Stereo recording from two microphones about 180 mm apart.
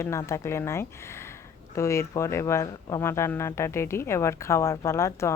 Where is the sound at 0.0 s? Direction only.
15° left (ahead or behind).